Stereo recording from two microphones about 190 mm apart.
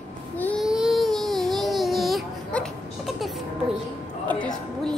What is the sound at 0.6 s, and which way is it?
Baby cry, centre (ahead or behind).